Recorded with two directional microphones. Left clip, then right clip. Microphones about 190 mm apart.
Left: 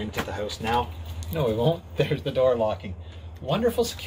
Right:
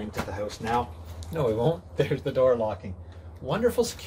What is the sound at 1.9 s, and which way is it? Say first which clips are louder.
Speech: left 1 dB; 15° right (ahead or behind).